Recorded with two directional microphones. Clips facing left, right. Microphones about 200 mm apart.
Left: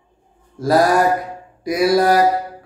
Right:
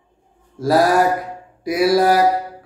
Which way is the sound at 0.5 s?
5° right (ahead or behind).